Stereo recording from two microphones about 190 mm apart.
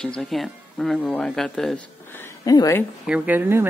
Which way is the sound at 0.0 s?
5° left (ahead or behind).